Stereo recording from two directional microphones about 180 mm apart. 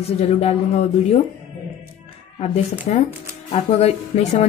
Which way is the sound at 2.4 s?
40° left (ahead or behind).